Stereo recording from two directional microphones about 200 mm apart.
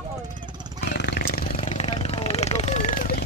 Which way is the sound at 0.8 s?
60° left (ahead or behind).